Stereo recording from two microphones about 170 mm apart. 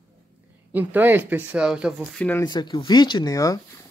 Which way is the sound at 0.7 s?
10° right (ahead or behind).